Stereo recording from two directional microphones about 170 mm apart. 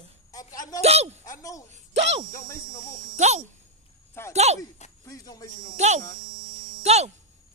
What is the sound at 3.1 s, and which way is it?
A woman's voice, 45° right (ahead or behind).